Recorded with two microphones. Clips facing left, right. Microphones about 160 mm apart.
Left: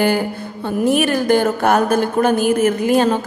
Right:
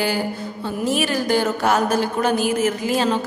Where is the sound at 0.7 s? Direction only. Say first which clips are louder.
Left 6 dB; 55° left (ahead or behind).